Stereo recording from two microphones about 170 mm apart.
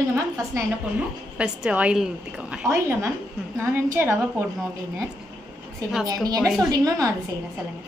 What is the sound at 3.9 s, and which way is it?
Speech, 10° right (ahead or behind).